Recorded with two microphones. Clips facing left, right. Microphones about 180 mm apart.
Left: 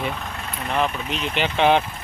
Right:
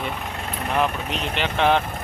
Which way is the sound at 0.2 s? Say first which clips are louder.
Right 2 dB; 25° right (ahead or behind).